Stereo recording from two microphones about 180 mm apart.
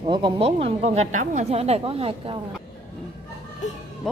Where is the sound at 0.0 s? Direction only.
30° right (ahead or behind).